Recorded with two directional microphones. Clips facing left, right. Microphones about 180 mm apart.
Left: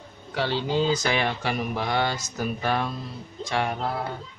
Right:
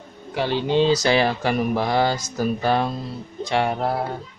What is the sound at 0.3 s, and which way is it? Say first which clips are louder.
Speech: right 4 dB; 15° right (ahead or behind).